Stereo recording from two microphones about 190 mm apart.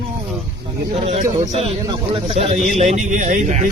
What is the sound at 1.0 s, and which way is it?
Speech, 30° right (ahead or behind).